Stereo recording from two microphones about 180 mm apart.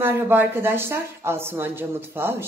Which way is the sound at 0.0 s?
10° right (ahead or behind).